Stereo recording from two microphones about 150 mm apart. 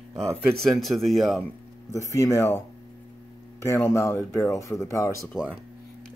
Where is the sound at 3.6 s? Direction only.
20° left (ahead or behind).